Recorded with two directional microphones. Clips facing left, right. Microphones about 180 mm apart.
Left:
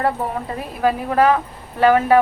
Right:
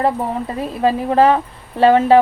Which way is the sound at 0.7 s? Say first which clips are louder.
Right 2 dB; 25° right (ahead or behind).